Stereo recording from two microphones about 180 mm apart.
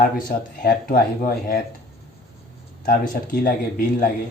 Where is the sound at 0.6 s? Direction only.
50° left (ahead or behind).